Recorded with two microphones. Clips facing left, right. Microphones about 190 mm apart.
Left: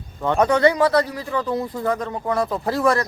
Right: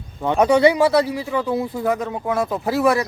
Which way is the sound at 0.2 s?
10° right (ahead or behind).